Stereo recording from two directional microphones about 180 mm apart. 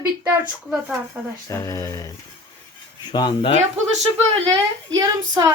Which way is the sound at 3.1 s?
30° left (ahead or behind).